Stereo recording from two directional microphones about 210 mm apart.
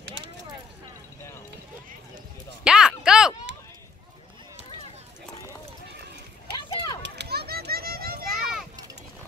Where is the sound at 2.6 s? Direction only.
5° right (ahead or behind).